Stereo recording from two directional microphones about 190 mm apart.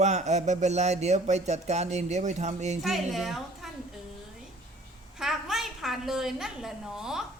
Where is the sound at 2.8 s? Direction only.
Centre (ahead or behind).